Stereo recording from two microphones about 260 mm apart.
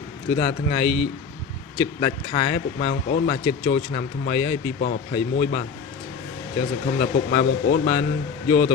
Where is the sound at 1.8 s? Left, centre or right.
Left.